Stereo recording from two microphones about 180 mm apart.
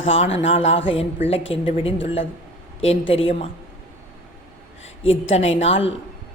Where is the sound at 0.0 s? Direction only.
30° left (ahead or behind).